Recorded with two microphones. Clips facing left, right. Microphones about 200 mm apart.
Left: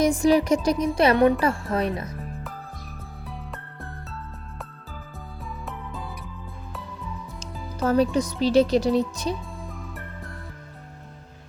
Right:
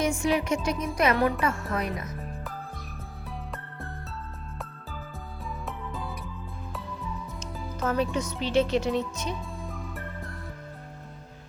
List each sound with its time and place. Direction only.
0.0 s speech: 35° left (ahead or behind)
1.1 s speech: 20° left (ahead or behind)
1.4 s speech: 30° left (ahead or behind)
5.6 s music: centre (ahead or behind)
7.8 s speech: 35° left (ahead or behind)
9.6 s music: centre (ahead or behind)